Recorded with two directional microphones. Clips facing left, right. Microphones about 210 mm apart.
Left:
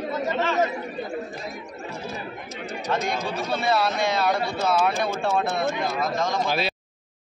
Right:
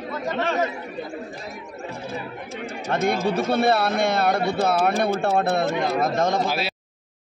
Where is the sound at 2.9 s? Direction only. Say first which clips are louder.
Right 5 dB; 60° right (ahead or behind).